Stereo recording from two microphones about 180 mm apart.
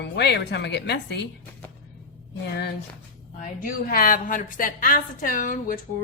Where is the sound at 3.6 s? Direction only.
50° left (ahead or behind).